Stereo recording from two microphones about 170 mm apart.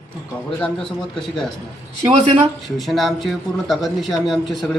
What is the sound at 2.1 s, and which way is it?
Speech, 40° right (ahead or behind).